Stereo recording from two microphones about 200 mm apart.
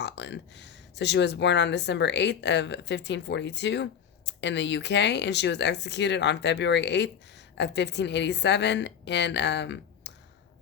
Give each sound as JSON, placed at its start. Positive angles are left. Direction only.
{"t": 0.0, "sound": "speech", "side_deg": 60}